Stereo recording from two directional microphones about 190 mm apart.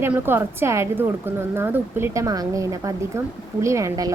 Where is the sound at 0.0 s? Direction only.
10° right (ahead or behind).